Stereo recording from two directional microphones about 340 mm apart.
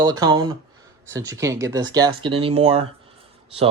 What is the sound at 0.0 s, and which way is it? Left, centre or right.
Speech, centre.